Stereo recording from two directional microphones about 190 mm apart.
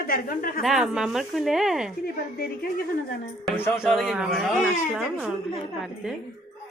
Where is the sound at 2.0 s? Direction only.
50° left (ahead or behind).